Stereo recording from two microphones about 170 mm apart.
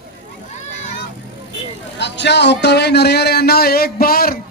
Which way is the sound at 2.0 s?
90° left.